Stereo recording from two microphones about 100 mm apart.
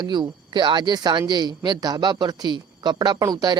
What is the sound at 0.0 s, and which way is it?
Speech, 45° right (ahead or behind).